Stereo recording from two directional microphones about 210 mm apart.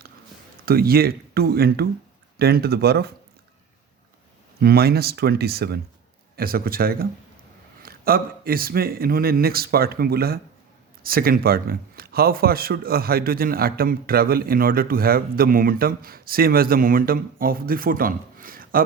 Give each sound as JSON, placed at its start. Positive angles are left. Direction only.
{"t": 0.6, "sound": "speech", "side_deg": -45}
{"t": 4.6, "sound": "speech", "side_deg": -50}